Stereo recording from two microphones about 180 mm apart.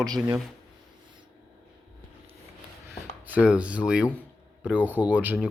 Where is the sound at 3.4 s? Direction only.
5° right (ahead or behind).